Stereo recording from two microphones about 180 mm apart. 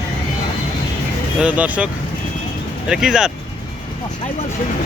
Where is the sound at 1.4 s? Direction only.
10° right (ahead or behind).